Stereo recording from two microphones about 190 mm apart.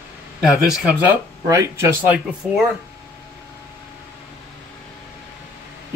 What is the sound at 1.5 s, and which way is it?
Speech, 15° right (ahead or behind).